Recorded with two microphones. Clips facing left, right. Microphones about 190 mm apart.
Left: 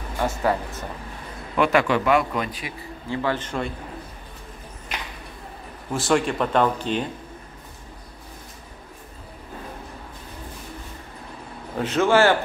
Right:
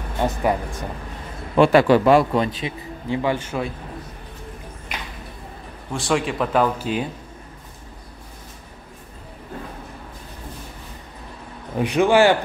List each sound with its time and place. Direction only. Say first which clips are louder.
0.2 s speech: right 2 dB; 15° right (ahead or behind)
1.6 s a man's voice: right 6 dB; 30° right (ahead or behind); by 3.7 s 5° right (ahead or behind)
5.9 s speech: left 1 dB; centre (ahead or behind)
11.8 s speech: right 2 dB; 15° right (ahead or behind)